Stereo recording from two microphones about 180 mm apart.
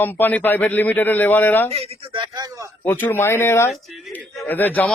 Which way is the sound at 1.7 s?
35° right (ahead or behind).